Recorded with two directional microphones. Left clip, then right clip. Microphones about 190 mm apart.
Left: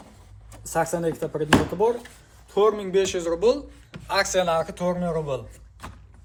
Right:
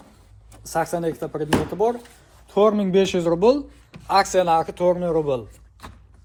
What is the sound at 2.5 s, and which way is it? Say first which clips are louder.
Speech: right 3 dB; 30° right (ahead or behind).